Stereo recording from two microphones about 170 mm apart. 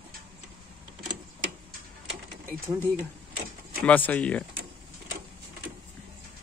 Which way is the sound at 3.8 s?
10° left (ahead or behind).